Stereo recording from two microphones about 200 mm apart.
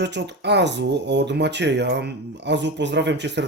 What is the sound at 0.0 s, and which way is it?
Speech, 60° right (ahead or behind).